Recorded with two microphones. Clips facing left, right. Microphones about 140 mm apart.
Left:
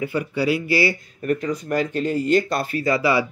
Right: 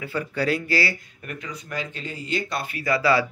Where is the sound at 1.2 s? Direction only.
45° left (ahead or behind).